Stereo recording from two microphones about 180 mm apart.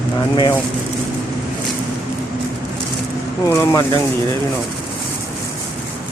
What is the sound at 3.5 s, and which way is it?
Speech, 15° left (ahead or behind).